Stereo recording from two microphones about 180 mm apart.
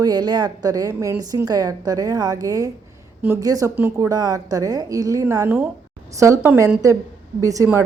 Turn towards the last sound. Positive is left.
turn(degrees=-20)  # may be behind; listen again after turning